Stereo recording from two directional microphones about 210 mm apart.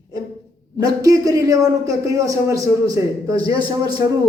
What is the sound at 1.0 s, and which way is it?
A man's voice, 15° right (ahead or behind).